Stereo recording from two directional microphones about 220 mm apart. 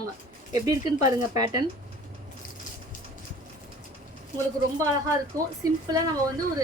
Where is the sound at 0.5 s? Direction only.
15° right (ahead or behind).